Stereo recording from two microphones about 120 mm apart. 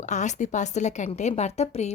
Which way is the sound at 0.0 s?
80° left.